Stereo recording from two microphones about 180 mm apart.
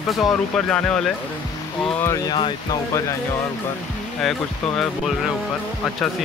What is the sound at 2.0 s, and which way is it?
Speech, 20° left (ahead or behind).